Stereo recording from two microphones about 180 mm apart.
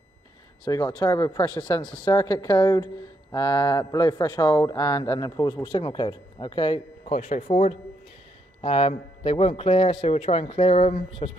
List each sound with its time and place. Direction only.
0.7 s a man's voice: 20° left (ahead or behind)